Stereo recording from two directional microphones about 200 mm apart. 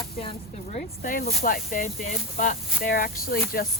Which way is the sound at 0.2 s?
30° left (ahead or behind).